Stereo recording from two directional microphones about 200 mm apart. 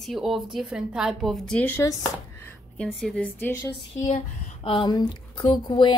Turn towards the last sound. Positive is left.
turn(degrees=20)  # may be behind; listen again after turning